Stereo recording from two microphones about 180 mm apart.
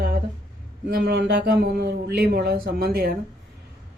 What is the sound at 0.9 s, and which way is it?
Speech, 60° right (ahead or behind).